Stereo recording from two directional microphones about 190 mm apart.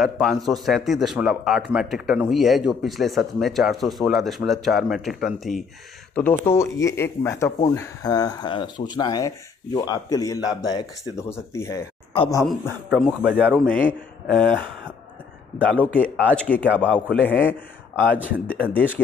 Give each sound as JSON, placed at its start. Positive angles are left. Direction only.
{"t": 0.0, "sound": "speech", "side_deg": 0}
{"t": 6.1, "sound": "a man's voice", "side_deg": 10}
{"t": 12.1, "sound": "speech", "side_deg": 30}
{"t": 12.4, "sound": "speech", "side_deg": 0}
{"t": 15.6, "sound": "a man's voice", "side_deg": 5}